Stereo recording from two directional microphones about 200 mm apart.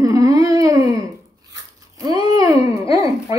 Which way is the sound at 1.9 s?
20° right (ahead or behind).